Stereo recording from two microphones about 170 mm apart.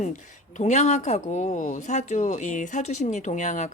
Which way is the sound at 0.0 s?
45° left (ahead or behind).